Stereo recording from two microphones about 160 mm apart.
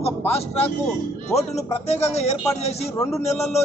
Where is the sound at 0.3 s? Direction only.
40° left (ahead or behind).